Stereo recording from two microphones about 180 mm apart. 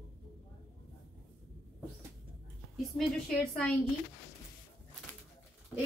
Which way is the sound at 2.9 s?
5° left (ahead or behind).